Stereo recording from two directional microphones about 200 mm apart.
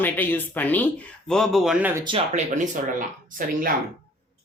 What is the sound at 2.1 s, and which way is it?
Speech, 30° right (ahead or behind).